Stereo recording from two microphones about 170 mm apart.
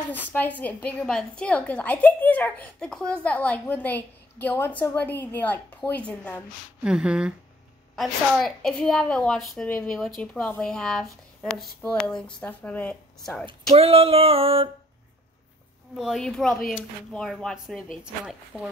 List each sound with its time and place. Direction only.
0.1 s a woman's voice: 10° left (ahead or behind)
6.8 s a woman's voice: 5° right (ahead or behind)
13.5 s speech: 35° right (ahead or behind)
16.0 s a woman's voice: centre (ahead or behind)